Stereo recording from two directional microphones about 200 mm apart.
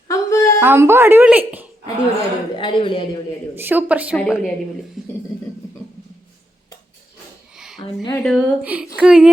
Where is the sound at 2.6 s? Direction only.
25° left (ahead or behind).